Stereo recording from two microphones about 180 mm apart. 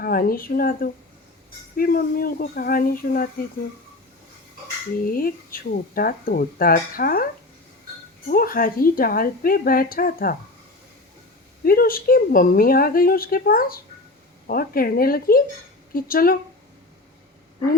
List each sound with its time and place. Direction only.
0.0 s a woman's voice: 55° left (ahead or behind)
5.1 s a woman's voice: 55° left (ahead or behind)
8.3 s a woman's voice: 55° left (ahead or behind)
11.6 s a woman's voice: 55° left (ahead or behind)